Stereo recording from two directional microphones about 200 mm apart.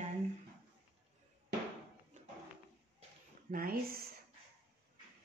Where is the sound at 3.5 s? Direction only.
45° right (ahead or behind).